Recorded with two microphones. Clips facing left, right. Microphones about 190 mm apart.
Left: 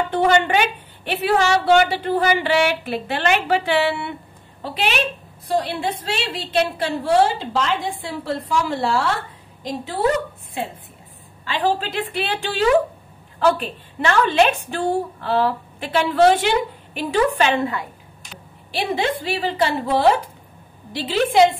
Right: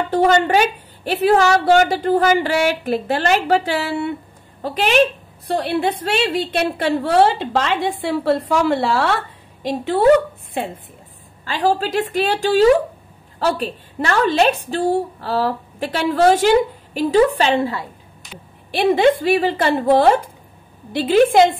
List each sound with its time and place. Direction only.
0.1 s a woman's voice: 40° right (ahead or behind)
5.5 s a woman's voice: 60° right (ahead or behind)
11.4 s a woman's voice: 40° right (ahead or behind)
18.7 s a woman's voice: 55° right (ahead or behind)